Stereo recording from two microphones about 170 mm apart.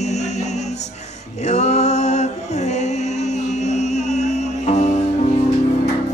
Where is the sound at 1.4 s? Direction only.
40° left (ahead or behind).